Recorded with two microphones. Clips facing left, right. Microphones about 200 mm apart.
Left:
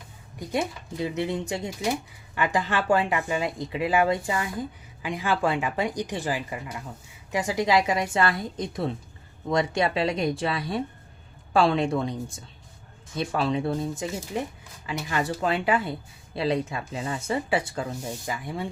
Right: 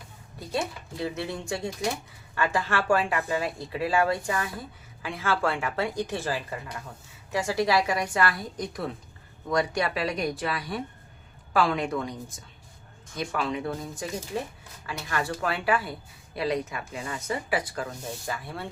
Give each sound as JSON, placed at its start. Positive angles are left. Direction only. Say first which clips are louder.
{"t": 0.3, "sound": "speech", "louder": "left 3 dB", "side_deg": 20}
{"t": 13.1, "sound": "speech", "louder": "left 4 dB", "side_deg": 30}